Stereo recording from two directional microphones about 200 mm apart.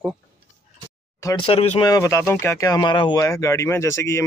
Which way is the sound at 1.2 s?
20° left (ahead or behind).